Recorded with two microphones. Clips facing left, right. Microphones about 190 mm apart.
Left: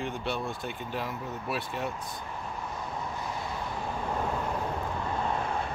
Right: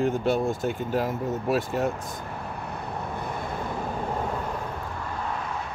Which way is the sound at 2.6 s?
65° right (ahead or behind).